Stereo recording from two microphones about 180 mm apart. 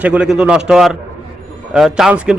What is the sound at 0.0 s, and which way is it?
A man's voice, 5° right (ahead or behind).